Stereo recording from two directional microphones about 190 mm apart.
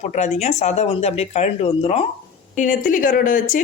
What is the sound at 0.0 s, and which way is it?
Speech, 35° left (ahead or behind).